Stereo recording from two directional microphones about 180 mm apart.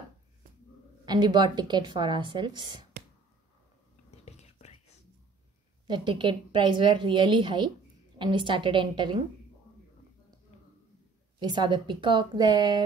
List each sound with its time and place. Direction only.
1.0 s a woman's voice: 25° right (ahead or behind)
4.2 s whispering: 35° left (ahead or behind)
5.9 s a woman's voice: 25° right (ahead or behind)
11.3 s a woman's voice: 25° right (ahead or behind)